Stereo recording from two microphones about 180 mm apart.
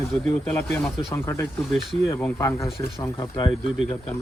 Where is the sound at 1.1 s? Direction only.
15° left (ahead or behind).